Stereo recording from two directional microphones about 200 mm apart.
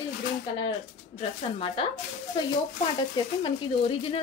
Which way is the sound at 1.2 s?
25° left (ahead or behind).